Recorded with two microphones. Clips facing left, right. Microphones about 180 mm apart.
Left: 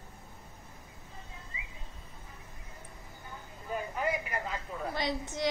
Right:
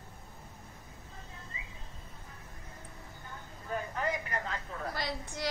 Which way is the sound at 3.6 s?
10° left (ahead or behind).